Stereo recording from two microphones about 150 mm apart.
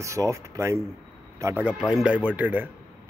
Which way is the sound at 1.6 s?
5° right (ahead or behind).